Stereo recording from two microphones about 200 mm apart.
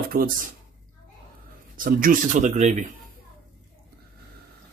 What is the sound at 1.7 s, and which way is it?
Speech, 45° right (ahead or behind).